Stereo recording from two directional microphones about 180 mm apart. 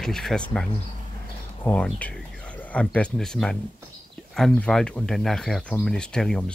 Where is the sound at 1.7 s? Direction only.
10° left (ahead or behind).